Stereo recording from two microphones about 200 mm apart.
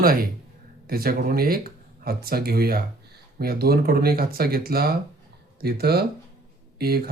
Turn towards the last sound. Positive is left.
turn(degrees=-50)  # may be behind; listen again after turning